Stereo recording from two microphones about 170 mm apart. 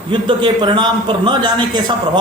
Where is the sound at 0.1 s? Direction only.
30° right (ahead or behind).